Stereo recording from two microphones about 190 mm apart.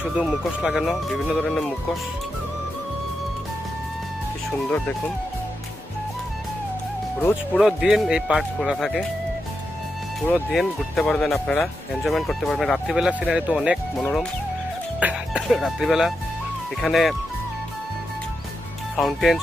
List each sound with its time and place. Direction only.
0.0 s speech: centre (ahead or behind)
4.6 s speech: 5° left (ahead or behind)
7.5 s speech: centre (ahead or behind)
10.2 s speech: 5° left (ahead or behind)
18.9 s speech: centre (ahead or behind)